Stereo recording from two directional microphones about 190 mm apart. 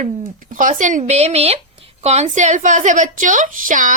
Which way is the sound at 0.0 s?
45° right (ahead or behind).